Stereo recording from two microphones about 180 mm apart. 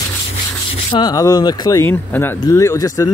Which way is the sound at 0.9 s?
25° left (ahead or behind).